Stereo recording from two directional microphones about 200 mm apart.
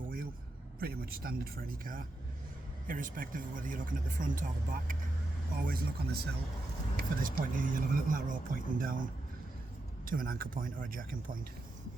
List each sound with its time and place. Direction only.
0.8 s speech: 50° right (ahead or behind)
10.1 s speech: 45° right (ahead or behind)